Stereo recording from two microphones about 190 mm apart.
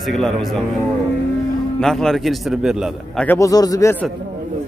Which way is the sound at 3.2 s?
15° left (ahead or behind).